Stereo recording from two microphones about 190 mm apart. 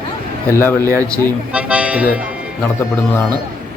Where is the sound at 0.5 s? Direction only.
10° left (ahead or behind).